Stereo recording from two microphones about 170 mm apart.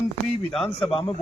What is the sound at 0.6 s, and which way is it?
Speech, 30° left (ahead or behind).